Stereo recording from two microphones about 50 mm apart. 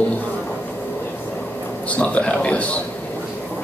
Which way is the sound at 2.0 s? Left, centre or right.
Left.